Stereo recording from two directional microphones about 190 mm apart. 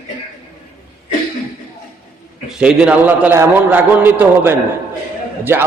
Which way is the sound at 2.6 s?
5° right (ahead or behind).